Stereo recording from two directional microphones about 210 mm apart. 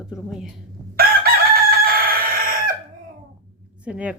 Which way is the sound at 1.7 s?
45° right (ahead or behind).